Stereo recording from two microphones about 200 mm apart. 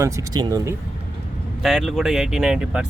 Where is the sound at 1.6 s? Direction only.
Centre (ahead or behind).